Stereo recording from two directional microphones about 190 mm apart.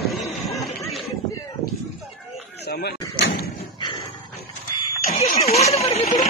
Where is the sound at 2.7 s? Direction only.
60° left (ahead or behind).